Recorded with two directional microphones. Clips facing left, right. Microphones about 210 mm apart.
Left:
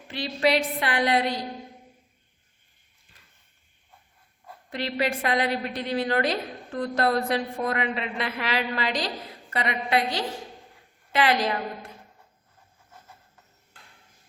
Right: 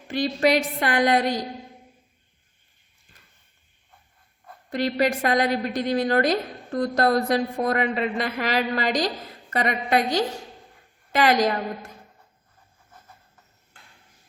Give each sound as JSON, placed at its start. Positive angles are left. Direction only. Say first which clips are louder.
{"t": 0.1, "sound": "a woman's voice", "louder": "right 3 dB", "side_deg": -45}
{"t": 4.7, "sound": "a woman's voice", "louder": "right 5 dB", "side_deg": -40}